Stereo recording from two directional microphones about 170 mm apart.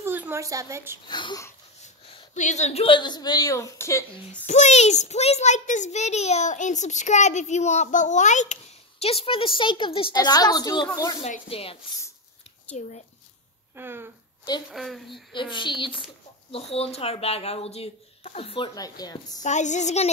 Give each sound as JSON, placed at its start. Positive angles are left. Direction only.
{"t": 0.0, "sound": "a sound", "side_deg": -15}
{"t": 1.0, "sound": "a woman's voice", "side_deg": 25}
{"t": 2.3, "sound": "a woman's voice", "side_deg": 45}
{"t": 4.5, "sound": "a child's voice", "side_deg": 40}
{"t": 11.4, "sound": "a woman's voice", "side_deg": 35}
{"t": 13.7, "sound": "speech", "side_deg": -15}
{"t": 14.7, "sound": "a woman's voice", "side_deg": 0}
{"t": 15.5, "sound": "a woman's voice", "side_deg": 30}
{"t": 19.4, "sound": "a child's voice", "side_deg": 45}